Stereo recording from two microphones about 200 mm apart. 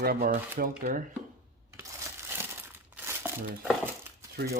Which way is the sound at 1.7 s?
15° right (ahead or behind).